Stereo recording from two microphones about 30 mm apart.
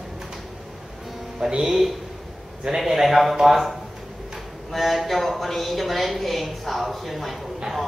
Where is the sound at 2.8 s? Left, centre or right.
Centre.